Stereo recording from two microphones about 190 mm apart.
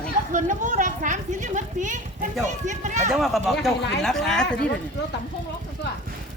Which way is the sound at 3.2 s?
Centre (ahead or behind).